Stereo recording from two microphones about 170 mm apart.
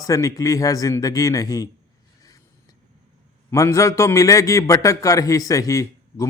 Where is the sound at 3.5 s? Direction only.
20° left (ahead or behind).